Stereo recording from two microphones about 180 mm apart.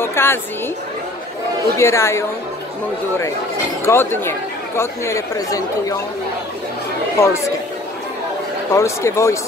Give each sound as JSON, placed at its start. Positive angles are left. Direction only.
{"t": 0.0, "sound": "a woman's voice", "side_deg": 15}
{"t": 1.8, "sound": "speech", "side_deg": 15}
{"t": 3.8, "sound": "speech", "side_deg": 15}
{"t": 7.2, "sound": "speech", "side_deg": 15}
{"t": 8.7, "sound": "speech", "side_deg": 15}